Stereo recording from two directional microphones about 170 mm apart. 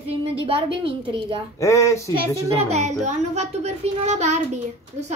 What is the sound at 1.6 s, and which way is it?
Speech, 15° left (ahead or behind).